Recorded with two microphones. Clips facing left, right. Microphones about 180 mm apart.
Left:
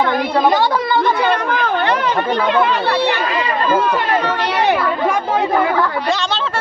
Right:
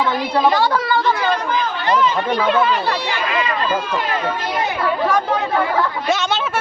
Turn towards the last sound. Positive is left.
turn(degrees=75)  # may be behind; listen again after turning